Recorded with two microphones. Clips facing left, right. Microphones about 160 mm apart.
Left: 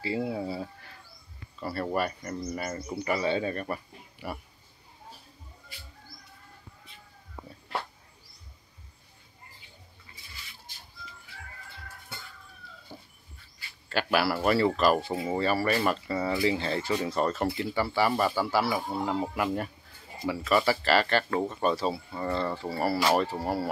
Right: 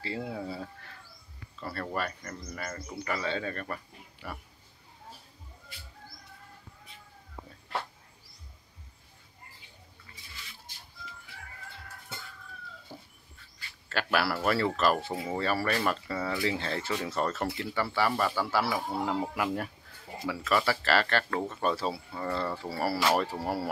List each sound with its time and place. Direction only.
0.0 s speech: 10° left (ahead or behind)
1.9 s speech: 20° left (ahead or behind)
12.9 s dog: centre (ahead or behind)
13.8 s speech: centre (ahead or behind)
22.9 s speech: 10° left (ahead or behind)
23.4 s speech: 10° right (ahead or behind)